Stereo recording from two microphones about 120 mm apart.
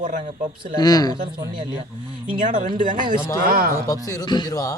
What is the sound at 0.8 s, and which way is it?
Speech, 30° left (ahead or behind).